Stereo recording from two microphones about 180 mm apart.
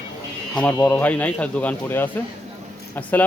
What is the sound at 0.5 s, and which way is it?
Speech, 5° left (ahead or behind).